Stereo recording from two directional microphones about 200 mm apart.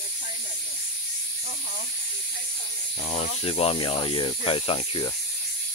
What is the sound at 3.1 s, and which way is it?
Speech, 30° left (ahead or behind).